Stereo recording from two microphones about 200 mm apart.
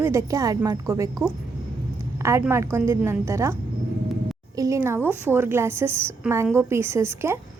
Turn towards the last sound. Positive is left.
turn(degrees=-10)  # may be behind; listen again after turning